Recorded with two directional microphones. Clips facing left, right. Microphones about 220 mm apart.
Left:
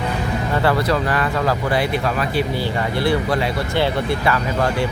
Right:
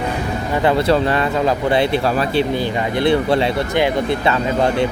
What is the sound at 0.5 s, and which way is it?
Speech, 20° right (ahead or behind).